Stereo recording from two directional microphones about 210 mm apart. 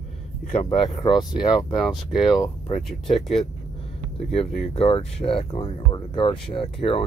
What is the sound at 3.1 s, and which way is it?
Speech, centre (ahead or behind).